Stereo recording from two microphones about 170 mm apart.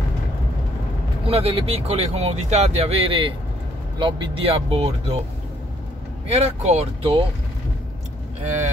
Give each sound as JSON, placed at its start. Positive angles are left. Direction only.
{"t": 1.2, "sound": "speech", "side_deg": -35}
{"t": 6.2, "sound": "speech", "side_deg": -35}